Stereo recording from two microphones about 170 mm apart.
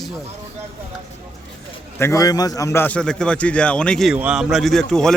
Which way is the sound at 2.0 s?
15° left (ahead or behind).